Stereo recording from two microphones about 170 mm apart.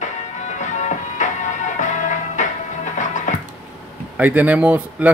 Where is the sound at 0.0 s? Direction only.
45° left (ahead or behind).